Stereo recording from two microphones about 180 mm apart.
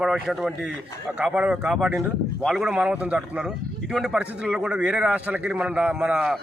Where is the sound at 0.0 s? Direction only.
Centre (ahead or behind).